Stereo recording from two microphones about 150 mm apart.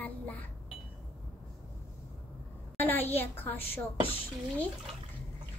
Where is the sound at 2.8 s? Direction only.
15° left (ahead or behind).